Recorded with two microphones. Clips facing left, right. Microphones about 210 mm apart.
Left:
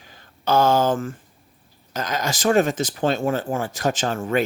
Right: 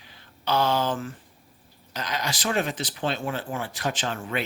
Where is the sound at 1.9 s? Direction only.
45° left (ahead or behind).